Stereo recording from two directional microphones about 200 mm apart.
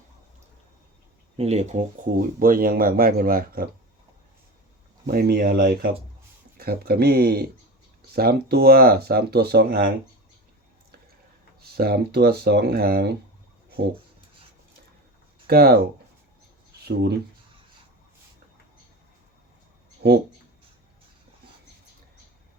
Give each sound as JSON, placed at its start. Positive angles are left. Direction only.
{"t": 1.4, "sound": "speech", "side_deg": -35}
{"t": 5.0, "sound": "speech", "side_deg": -50}
{"t": 11.6, "sound": "speech", "side_deg": -50}
{"t": 15.4, "sound": "speech", "side_deg": -50}
{"t": 16.8, "sound": "speech", "side_deg": -55}
{"t": 20.0, "sound": "speech", "side_deg": -55}